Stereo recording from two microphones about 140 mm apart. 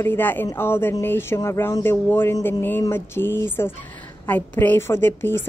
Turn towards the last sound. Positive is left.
turn(degrees=15)  # may be behind; listen again after turning